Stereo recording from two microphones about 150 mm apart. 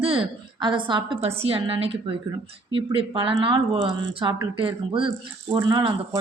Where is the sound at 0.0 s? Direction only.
35° right (ahead or behind).